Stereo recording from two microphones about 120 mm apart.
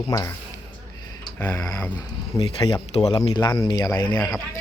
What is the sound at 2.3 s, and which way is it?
Speech, 25° left (ahead or behind).